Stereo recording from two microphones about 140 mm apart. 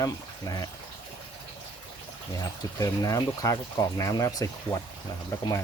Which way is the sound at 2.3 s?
25° left (ahead or behind).